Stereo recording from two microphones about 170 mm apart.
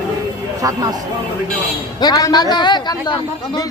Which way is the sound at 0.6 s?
20° right (ahead or behind).